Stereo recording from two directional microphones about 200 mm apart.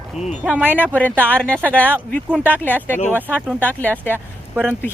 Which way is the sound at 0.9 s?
10° left (ahead or behind).